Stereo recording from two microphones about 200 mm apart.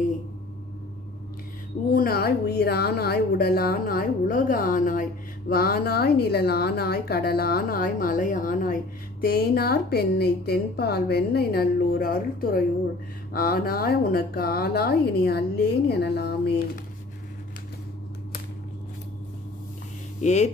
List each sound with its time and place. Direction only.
1.9 s a woman's voice: 45° left (ahead or behind)
20.2 s speech: 35° left (ahead or behind)